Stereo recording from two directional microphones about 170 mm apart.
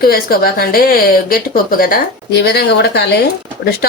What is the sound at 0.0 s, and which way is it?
Speech, 60° left (ahead or behind).